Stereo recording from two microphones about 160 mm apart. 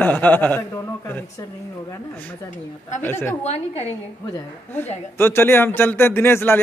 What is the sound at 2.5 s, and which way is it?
Speech, 50° left (ahead or behind).